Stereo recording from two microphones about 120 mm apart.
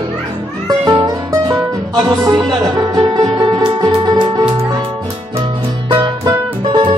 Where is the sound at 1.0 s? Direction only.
30° right (ahead or behind).